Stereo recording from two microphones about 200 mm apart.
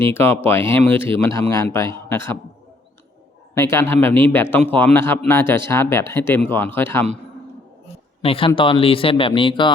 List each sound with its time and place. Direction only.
0.0 s speech: 10° left (ahead or behind)
3.5 s speech: 15° left (ahead or behind)
8.2 s speech: 30° left (ahead or behind)